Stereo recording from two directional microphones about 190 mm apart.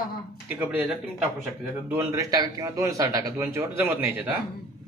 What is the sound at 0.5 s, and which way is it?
Speech, 5° right (ahead or behind).